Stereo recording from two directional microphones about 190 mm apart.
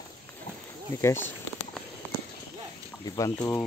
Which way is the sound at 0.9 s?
15° left (ahead or behind).